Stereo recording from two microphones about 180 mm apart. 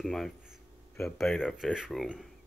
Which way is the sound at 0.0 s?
Centre (ahead or behind).